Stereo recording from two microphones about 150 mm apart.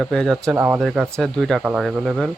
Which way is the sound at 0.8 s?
Centre (ahead or behind).